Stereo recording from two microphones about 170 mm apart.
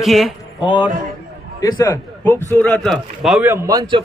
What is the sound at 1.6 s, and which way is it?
A man's voice, 20° left (ahead or behind).